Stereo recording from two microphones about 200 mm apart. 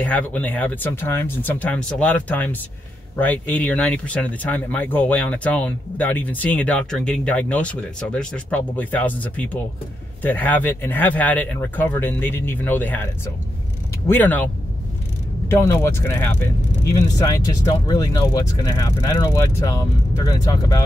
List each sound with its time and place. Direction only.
0.0 s speech: 5° left (ahead or behind)